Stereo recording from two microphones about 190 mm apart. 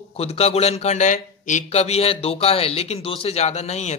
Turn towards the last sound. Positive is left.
turn(degrees=35)  # may be behind; listen again after turning